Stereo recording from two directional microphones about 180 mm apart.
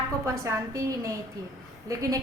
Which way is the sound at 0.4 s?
15° right (ahead or behind).